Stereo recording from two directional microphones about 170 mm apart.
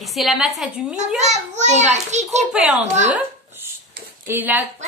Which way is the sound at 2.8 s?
45° right (ahead or behind).